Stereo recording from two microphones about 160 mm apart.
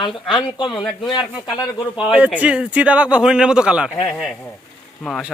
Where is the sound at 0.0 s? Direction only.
30° left (ahead or behind).